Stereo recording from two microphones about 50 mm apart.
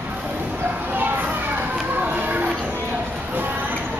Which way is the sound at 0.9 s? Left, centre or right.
Right.